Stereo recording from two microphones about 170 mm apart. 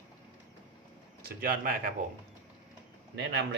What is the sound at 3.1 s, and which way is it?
Speech, 75° right (ahead or behind).